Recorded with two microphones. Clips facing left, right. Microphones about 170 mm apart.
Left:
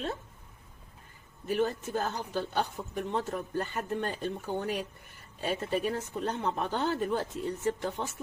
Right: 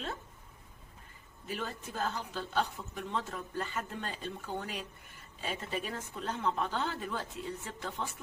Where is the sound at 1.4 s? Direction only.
50° left (ahead or behind).